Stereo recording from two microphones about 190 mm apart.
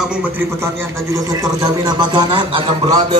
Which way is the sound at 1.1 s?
15° right (ahead or behind).